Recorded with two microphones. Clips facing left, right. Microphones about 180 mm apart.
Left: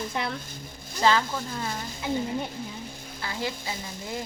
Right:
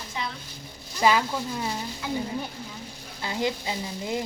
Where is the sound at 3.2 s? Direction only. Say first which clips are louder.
Right 5 dB; 20° right (ahead or behind).